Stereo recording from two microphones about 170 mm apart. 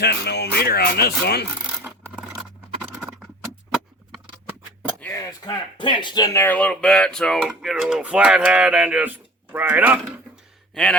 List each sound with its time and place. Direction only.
0.0 s speech: 75° left (ahead or behind)
1.8 s coin: 10° right (ahead or behind)
2.4 s scratch: 5° right (ahead or behind)
4.9 s a sound: 10° left (ahead or behind)
5.5 s speech: 25° left (ahead or behind); by 10.2 s 10° right (ahead or behind)